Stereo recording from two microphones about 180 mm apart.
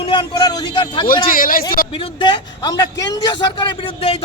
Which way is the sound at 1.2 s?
50° left (ahead or behind).